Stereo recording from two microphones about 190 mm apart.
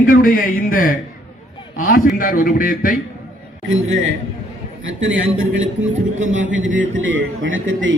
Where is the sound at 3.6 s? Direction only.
90° right.